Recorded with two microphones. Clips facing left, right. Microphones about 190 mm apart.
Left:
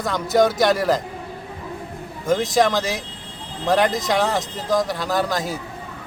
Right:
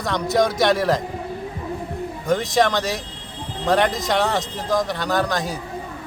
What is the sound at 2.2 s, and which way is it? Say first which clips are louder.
A man's voice: left 1 dB; centre (ahead or behind).